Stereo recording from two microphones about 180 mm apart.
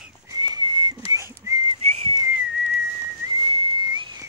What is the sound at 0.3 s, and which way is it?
Whistling, 25° right (ahead or behind).